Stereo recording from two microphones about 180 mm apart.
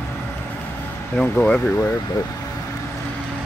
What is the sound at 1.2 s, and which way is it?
Speech, 10° left (ahead or behind).